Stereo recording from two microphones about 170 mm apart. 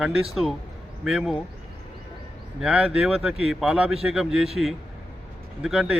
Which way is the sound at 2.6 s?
5° right (ahead or behind).